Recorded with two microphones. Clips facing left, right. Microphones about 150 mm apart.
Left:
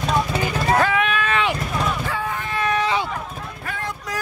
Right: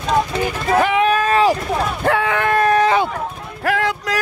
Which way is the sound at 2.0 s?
70° right (ahead or behind).